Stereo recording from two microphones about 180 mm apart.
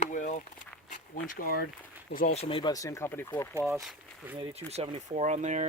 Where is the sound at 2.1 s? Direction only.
45° left (ahead or behind); by 3.6 s 10° left (ahead or behind).